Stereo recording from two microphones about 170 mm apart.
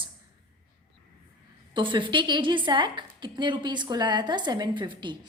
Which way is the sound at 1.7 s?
30° right (ahead or behind).